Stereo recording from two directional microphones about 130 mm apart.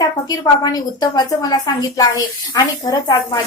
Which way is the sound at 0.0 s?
30° left (ahead or behind).